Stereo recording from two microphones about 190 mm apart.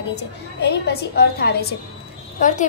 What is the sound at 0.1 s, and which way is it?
A woman's voice, 60° left (ahead or behind).